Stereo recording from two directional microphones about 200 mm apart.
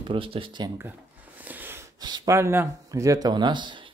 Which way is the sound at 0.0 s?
25° right (ahead or behind).